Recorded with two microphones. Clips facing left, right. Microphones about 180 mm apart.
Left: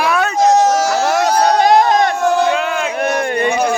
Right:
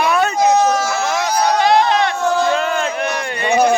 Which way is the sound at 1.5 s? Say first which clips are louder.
Left 1 dB; 45° left (ahead or behind).